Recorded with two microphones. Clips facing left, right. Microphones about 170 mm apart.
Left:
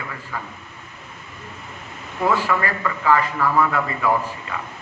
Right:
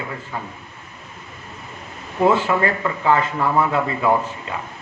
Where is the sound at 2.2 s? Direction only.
25° right (ahead or behind).